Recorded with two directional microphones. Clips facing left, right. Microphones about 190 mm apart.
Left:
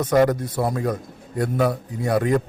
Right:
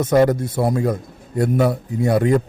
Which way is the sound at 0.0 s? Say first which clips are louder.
Right 3 dB; 25° right (ahead or behind).